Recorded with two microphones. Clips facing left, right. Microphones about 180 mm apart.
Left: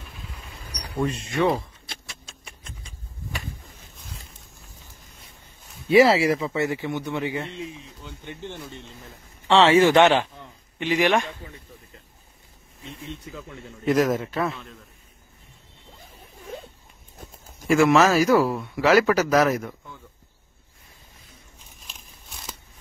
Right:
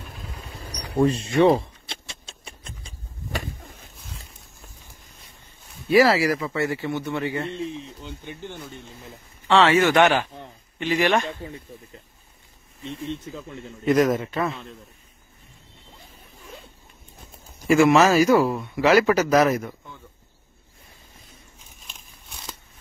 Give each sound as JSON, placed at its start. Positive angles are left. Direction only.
{"t": 0.7, "sound": "a sound", "side_deg": -30}
{"t": 5.9, "sound": "speech", "side_deg": 25}
{"t": 8.4, "sound": "speech", "side_deg": 0}
{"t": 9.5, "sound": "a man's voice", "side_deg": 30}
{"t": 10.8, "sound": "speech", "side_deg": 15}
{"t": 13.2, "sound": "speech", "side_deg": -25}
{"t": 13.8, "sound": "speech", "side_deg": 0}
{"t": 17.6, "sound": "speech", "side_deg": 0}
{"t": 21.7, "sound": "a sound", "side_deg": 0}